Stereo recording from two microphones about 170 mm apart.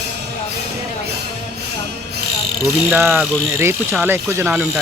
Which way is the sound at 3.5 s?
15° right (ahead or behind).